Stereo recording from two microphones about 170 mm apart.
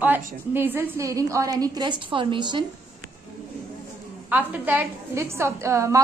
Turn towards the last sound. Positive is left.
turn(degrees=-15)  # may be behind; listen again after turning